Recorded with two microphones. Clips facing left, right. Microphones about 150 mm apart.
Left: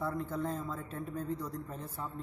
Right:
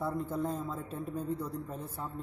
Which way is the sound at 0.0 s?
10° right (ahead or behind).